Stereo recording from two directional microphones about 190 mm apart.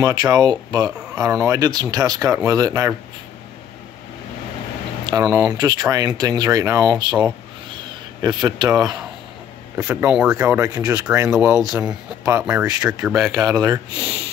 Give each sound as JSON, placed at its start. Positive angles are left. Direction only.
{"t": 0.0, "sound": "speech", "side_deg": -20}
{"t": 5.0, "sound": "speech", "side_deg": -20}
{"t": 7.7, "sound": "crow", "side_deg": -20}
{"t": 9.8, "sound": "speech", "side_deg": -10}
{"t": 11.2, "sound": "speech", "side_deg": -5}
{"t": 13.3, "sound": "speech", "side_deg": -20}